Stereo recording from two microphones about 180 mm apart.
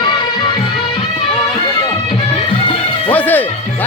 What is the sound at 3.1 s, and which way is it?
Music, 10° left (ahead or behind).